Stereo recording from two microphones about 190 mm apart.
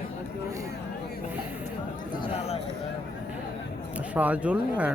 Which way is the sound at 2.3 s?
30° left (ahead or behind).